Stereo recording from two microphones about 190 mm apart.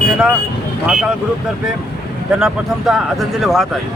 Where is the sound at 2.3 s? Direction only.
5° right (ahead or behind).